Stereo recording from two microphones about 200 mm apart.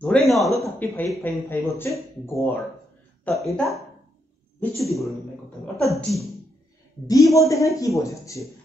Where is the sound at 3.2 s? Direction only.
Centre (ahead or behind).